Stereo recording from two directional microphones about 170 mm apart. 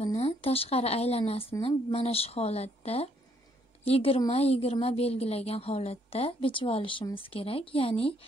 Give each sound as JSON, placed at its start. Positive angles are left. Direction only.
{"t": 0.0, "sound": "a woman's voice", "side_deg": 40}